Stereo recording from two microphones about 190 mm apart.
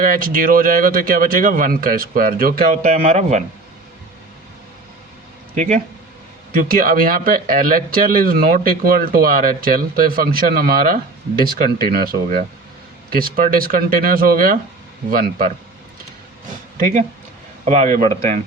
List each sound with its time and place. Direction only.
0.0 s speech: 45° right (ahead or behind)
2.8 s speech: 35° right (ahead or behind)
5.5 s speech: 40° right (ahead or behind)
17.7 s speech: 40° right (ahead or behind)